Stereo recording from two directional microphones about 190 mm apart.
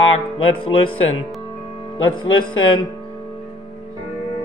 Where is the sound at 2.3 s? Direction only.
90° left.